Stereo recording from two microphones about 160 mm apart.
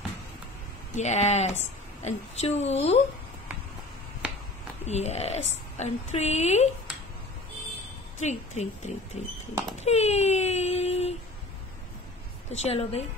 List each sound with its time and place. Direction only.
0.9 s a woman's voice: 45° left (ahead or behind)
4.8 s a woman's voice: 45° left (ahead or behind)
8.2 s a woman's voice: 45° left (ahead or behind)
12.4 s a woman's voice: 45° left (ahead or behind)